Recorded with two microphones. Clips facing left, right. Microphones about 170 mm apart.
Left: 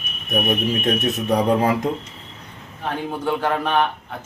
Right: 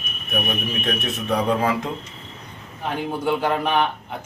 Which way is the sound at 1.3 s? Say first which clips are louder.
Left 2 dB; 40° left (ahead or behind).